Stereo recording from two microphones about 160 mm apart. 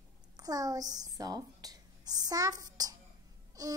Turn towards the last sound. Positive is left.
turn(degrees=-20)  # may be behind; listen again after turning